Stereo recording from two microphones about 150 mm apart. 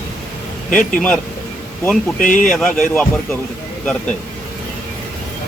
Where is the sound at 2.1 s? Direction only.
60° left (ahead or behind).